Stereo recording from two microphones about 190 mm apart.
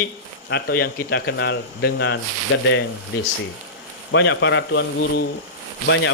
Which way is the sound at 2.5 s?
90° left.